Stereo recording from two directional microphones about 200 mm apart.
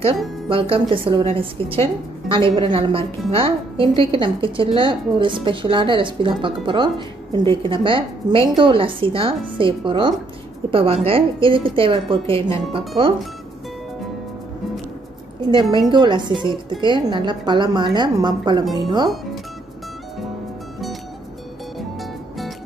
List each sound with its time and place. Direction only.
0.5 s speech: 25° right (ahead or behind)
15.5 s speech: 25° right (ahead or behind)